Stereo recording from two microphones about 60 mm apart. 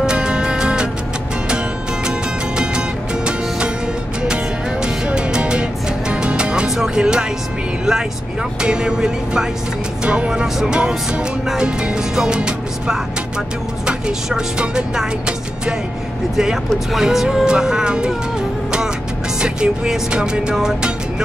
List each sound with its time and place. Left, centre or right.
0.0 s music: centre
2.0 s music: centre
4.8 s music: centre
8.6 s speech: centre
19.4 s speech: centre